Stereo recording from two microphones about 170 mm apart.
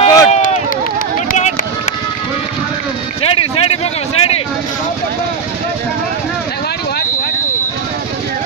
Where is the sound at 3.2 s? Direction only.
35° left (ahead or behind).